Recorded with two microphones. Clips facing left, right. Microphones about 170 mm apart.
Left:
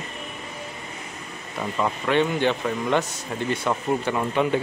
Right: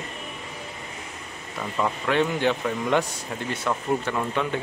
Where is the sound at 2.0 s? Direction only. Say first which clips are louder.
Left 2 dB; centre (ahead or behind).